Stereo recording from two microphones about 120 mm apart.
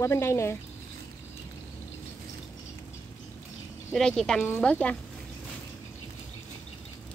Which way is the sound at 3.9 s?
5° left (ahead or behind).